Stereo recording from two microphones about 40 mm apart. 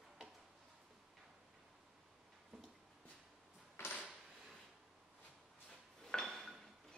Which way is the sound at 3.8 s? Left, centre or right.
Left.